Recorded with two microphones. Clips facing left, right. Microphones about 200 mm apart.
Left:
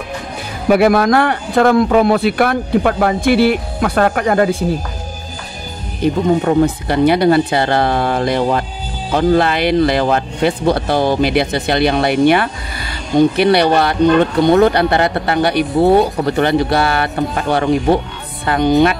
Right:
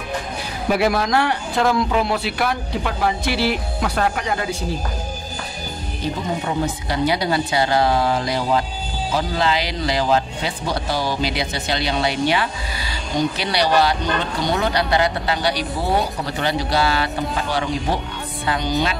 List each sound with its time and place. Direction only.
0.7 s speech: 55° left (ahead or behind)
6.4 s speech: 60° left (ahead or behind)